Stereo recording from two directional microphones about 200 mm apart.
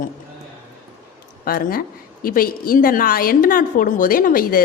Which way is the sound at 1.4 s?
45° left (ahead or behind).